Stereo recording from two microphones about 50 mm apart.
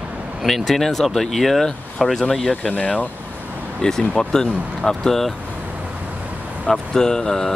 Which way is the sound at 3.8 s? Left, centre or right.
Centre.